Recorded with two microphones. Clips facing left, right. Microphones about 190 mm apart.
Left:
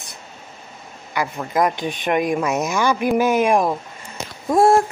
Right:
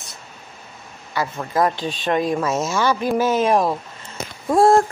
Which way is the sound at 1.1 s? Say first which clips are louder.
Even; 15° left (ahead or behind).